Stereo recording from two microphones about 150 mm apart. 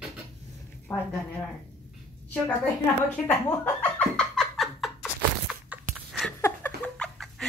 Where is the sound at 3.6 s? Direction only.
10° left (ahead or behind).